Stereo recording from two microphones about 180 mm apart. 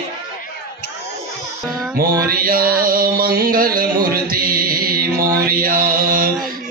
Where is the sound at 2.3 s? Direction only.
55° right (ahead or behind).